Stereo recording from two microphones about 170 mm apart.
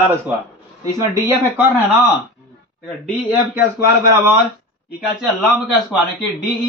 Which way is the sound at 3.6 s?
15° right (ahead or behind).